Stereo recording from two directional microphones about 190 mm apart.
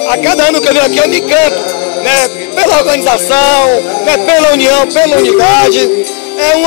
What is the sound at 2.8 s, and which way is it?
Speech, 10° left (ahead or behind).